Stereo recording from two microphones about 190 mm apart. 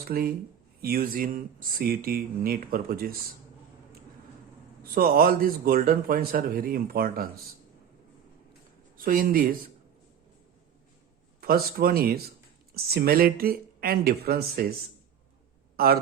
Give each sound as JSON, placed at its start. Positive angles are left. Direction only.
{"t": 0.0, "sound": "speech", "side_deg": -50}
{"t": 4.8, "sound": "speech", "side_deg": -50}
{"t": 9.0, "sound": "speech", "side_deg": -50}
{"t": 11.3, "sound": "speech", "side_deg": -50}
{"t": 15.7, "sound": "a sound", "side_deg": -50}